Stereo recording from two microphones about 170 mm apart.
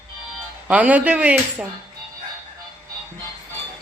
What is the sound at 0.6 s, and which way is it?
Speech, 10° right (ahead or behind).